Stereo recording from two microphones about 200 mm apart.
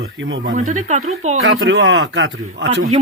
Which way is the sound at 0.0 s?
80° right.